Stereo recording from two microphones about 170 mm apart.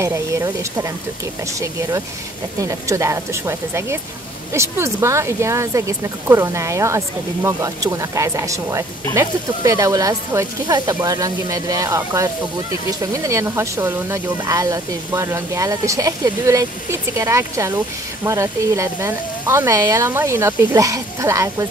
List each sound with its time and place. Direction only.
0.0 s speech: 15° right (ahead or behind)